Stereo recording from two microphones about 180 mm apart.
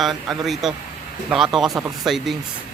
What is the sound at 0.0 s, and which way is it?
Speech, centre (ahead or behind).